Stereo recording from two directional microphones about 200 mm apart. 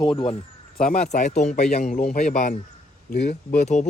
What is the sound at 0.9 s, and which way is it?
A man's voice, 40° left (ahead or behind).